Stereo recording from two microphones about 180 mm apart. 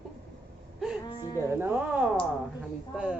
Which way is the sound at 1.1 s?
25° left (ahead or behind).